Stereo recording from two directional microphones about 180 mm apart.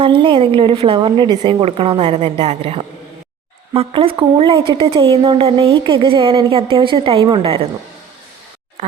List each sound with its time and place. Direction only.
0.0 s a woman's voice: 30° right (ahead or behind)